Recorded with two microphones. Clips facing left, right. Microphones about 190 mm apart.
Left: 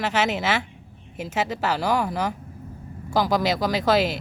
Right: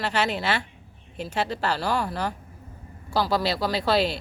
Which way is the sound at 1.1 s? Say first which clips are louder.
Left 1 dB; 15° left (ahead or behind).